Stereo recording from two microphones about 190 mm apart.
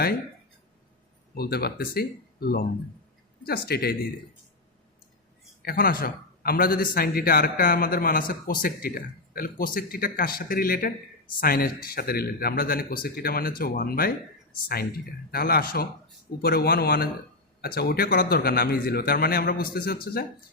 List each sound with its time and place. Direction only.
1.4 s speech: 55° left (ahead or behind)
5.6 s speech: 50° left (ahead or behind)
15.3 s speech: 50° left (ahead or behind)